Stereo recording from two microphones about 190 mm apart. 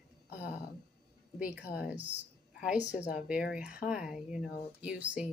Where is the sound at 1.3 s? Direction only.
5° right (ahead or behind).